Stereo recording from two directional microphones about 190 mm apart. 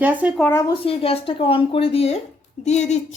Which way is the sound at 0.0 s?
10° right (ahead or behind).